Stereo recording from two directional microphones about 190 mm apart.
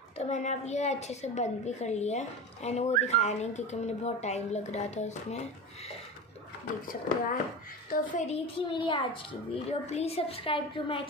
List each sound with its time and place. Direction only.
0.2 s a woman's voice: 40° left (ahead or behind)
6.9 s a woman's voice: 45° left (ahead or behind); by 11.1 s 25° left (ahead or behind)